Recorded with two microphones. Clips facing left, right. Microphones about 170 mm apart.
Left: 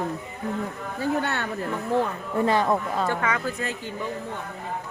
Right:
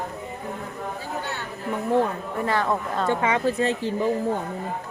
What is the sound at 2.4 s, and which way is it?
Speech, 15° left (ahead or behind).